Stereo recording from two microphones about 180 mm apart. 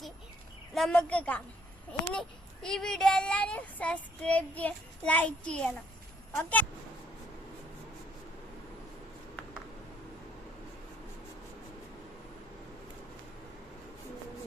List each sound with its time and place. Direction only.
0.7 s a woman's voice: 5° left (ahead or behind)